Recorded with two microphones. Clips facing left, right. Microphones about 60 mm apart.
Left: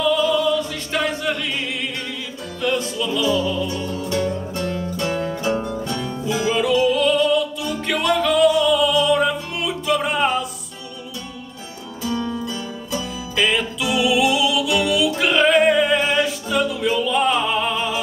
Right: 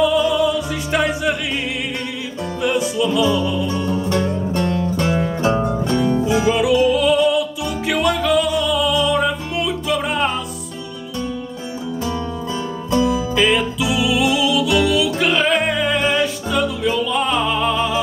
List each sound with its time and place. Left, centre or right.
0.0 s music: centre
2.6 s music: centre
3.8 s music: right
4.6 s music: right
5.9 s music: right
6.5 s music: centre
13.0 s music: centre